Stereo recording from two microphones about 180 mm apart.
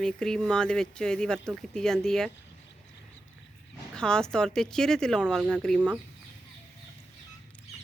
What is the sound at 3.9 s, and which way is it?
Speech, 5° left (ahead or behind).